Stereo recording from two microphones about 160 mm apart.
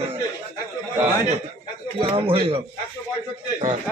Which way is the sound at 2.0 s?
35° right (ahead or behind).